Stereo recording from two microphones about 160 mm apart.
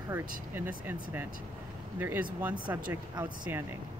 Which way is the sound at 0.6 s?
10° right (ahead or behind).